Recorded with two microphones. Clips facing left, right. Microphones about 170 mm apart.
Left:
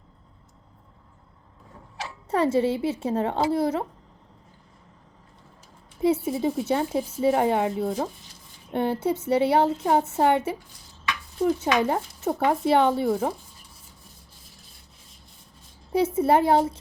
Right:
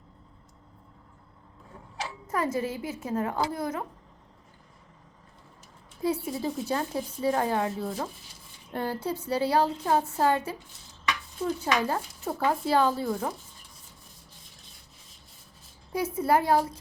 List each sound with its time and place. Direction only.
2.3 s a woman's voice: 30° left (ahead or behind)
6.0 s a woman's voice: 25° left (ahead or behind)
15.9 s a woman's voice: 25° left (ahead or behind)